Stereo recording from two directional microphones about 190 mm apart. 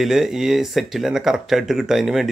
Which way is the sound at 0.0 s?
Centre (ahead or behind).